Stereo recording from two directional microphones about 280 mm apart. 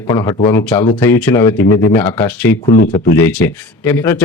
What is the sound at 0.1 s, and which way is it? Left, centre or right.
Speech, centre.